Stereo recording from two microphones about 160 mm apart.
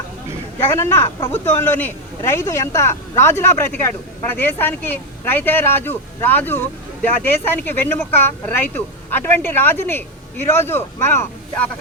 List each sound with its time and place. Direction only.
0.6 s speech: 15° left (ahead or behind)